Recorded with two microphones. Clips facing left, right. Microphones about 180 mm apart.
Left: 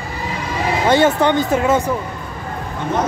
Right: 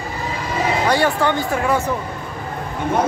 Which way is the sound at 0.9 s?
20° left (ahead or behind).